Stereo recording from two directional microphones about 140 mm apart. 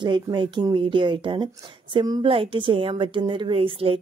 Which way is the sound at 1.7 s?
35° right (ahead or behind).